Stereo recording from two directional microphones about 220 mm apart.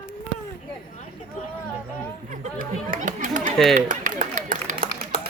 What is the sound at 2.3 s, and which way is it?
Chatter, 35° right (ahead or behind).